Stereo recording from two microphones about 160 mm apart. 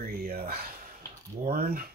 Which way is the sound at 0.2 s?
70° right (ahead or behind).